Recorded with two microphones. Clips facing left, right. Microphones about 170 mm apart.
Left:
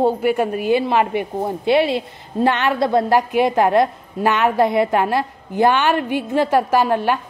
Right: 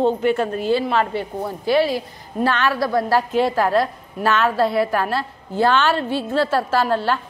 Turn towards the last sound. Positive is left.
turn(degrees=15)  # may be behind; listen again after turning